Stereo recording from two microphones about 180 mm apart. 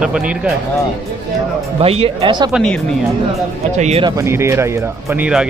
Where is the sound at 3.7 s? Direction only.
40° right (ahead or behind).